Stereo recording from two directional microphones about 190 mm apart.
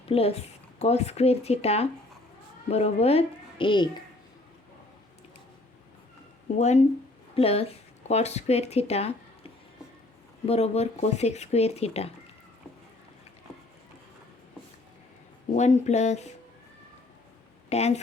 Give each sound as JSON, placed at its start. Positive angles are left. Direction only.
{"t": 0.1, "sound": "speech", "side_deg": 30}
{"t": 6.6, "sound": "speech", "side_deg": 35}
{"t": 15.5, "sound": "speech", "side_deg": 35}
{"t": 17.7, "sound": "speech", "side_deg": 35}